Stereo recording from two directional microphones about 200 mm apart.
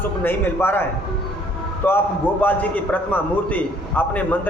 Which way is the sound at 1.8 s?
10° left (ahead or behind).